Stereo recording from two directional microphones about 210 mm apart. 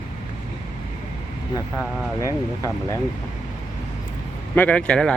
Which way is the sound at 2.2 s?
15° left (ahead or behind).